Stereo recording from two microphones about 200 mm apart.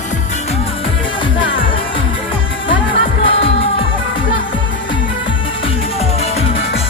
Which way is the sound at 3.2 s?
25° left (ahead or behind).